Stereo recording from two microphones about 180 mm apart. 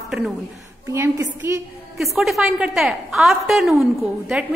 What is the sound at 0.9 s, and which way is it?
Speech, 15° right (ahead or behind).